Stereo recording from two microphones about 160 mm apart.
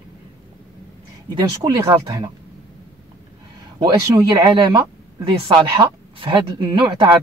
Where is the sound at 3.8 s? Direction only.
25° right (ahead or behind).